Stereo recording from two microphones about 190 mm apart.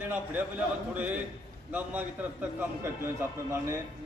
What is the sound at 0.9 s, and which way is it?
Speech, 10° right (ahead or behind).